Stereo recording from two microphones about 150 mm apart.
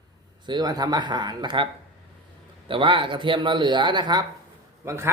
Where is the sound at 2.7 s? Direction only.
35° right (ahead or behind).